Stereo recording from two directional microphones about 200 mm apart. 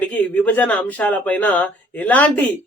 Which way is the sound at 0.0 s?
5° left (ahead or behind).